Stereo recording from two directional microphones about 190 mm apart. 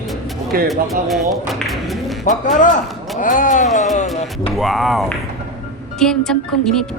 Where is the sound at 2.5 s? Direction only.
40° left (ahead or behind).